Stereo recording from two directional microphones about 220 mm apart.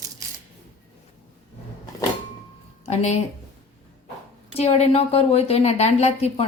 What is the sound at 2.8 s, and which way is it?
Speech, 30° left (ahead or behind).